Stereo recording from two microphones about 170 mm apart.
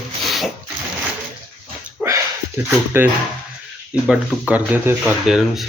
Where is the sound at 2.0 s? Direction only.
10° right (ahead or behind).